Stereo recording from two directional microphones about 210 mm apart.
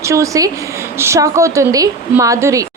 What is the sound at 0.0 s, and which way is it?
Speech, 15° right (ahead or behind).